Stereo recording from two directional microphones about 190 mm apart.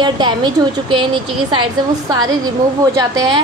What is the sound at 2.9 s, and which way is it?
Speech, 20° right (ahead or behind).